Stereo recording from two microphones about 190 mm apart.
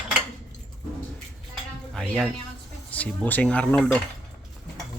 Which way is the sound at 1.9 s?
5° left (ahead or behind).